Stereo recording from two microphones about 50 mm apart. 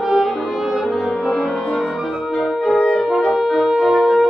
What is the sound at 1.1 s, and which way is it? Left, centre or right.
Music, centre.